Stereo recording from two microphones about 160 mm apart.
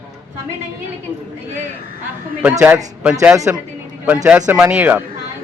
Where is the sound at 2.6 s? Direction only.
10° right (ahead or behind).